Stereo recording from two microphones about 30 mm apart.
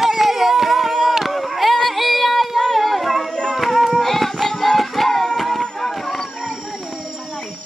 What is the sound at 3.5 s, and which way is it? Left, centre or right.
Music, centre.